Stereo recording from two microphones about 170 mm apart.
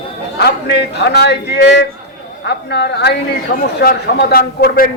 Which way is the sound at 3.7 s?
65° left (ahead or behind).